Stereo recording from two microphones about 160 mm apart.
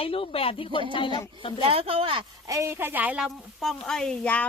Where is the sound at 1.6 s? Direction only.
35° right (ahead or behind).